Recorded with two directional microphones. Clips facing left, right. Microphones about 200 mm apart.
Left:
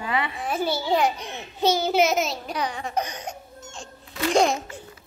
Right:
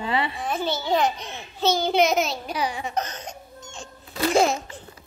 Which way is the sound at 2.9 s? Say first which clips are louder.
Left 1 dB; 10° left (ahead or behind).